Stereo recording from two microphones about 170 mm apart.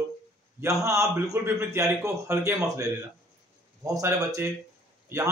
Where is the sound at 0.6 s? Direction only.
15° right (ahead or behind).